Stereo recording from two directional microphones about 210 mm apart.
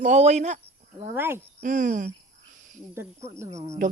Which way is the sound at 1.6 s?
40° right (ahead or behind).